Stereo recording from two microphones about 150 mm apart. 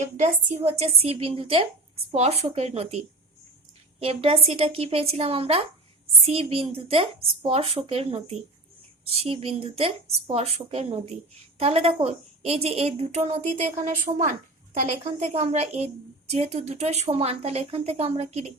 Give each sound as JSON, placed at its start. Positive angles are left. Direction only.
{"t": 0.0, "sound": "a woman's voice", "side_deg": -45}
{"t": 4.0, "sound": "a woman's voice", "side_deg": -40}